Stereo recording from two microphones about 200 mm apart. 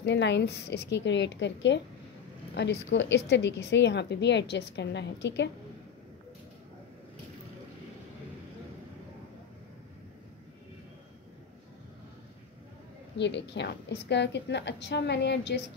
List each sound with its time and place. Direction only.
0.0 s a woman's voice: 60° left (ahead or behind)
13.2 s a woman's voice: 60° left (ahead or behind)